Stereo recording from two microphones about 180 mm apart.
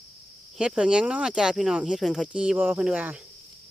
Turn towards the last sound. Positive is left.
turn(degrees=-5)  # may be behind; listen again after turning